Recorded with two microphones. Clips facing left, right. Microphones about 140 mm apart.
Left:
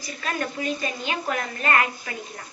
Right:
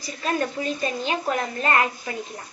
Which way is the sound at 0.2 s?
30° right (ahead or behind).